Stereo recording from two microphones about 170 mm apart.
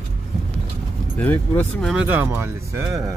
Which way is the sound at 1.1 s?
10° left (ahead or behind).